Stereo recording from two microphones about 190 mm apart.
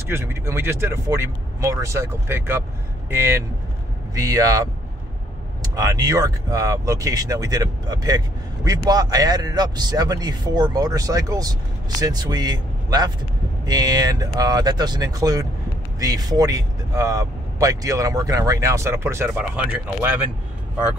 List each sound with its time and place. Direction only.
0.1 s a man's voice: 10° right (ahead or behind)